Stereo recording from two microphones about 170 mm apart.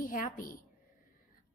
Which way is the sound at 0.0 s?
55° left (ahead or behind).